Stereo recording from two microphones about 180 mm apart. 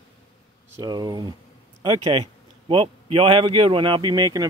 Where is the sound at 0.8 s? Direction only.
25° right (ahead or behind).